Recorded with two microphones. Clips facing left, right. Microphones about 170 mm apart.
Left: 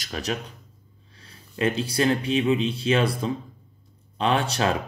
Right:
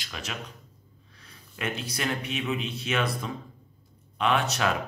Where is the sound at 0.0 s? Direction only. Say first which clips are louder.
Left 8 dB; 40° left (ahead or behind).